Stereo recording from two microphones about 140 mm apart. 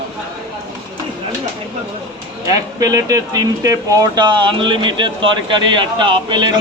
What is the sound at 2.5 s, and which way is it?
Speech, 25° right (ahead or behind).